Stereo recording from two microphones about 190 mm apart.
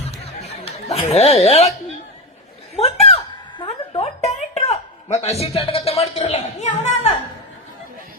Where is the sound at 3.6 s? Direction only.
30° left (ahead or behind).